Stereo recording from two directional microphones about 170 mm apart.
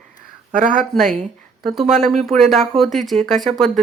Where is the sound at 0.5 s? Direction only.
50° right (ahead or behind).